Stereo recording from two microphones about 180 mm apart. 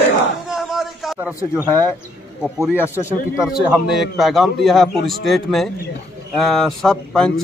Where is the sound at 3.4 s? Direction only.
5° right (ahead or behind).